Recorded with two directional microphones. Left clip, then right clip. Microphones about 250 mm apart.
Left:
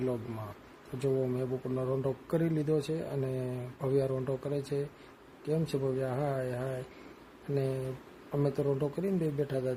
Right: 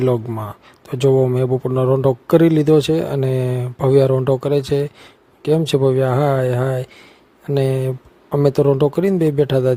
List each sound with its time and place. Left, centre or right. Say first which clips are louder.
0.9 s a man's voice: right 17 dB; right